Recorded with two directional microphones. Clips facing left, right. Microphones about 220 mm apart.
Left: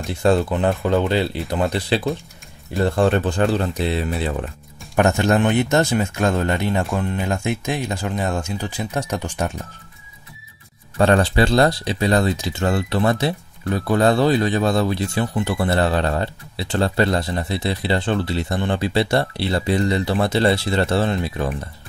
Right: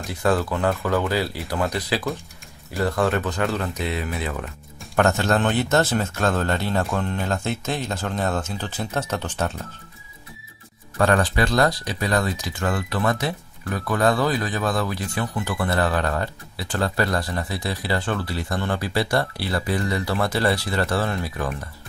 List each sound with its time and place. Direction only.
0.0 s speech: 25° left (ahead or behind)
4.9 s speech: 15° left (ahead or behind)
11.0 s speech: 25° left (ahead or behind)